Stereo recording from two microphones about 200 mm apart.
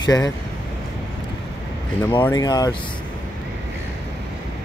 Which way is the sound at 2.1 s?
20° left (ahead or behind).